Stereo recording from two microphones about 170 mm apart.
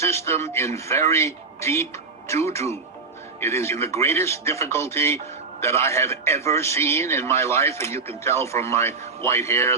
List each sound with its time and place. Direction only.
0.0 s speech: 15° left (ahead or behind)